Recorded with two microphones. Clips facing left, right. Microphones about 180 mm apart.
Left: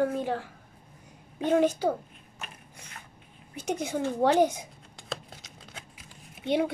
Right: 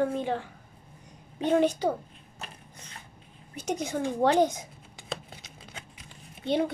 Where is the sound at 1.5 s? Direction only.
5° left (ahead or behind).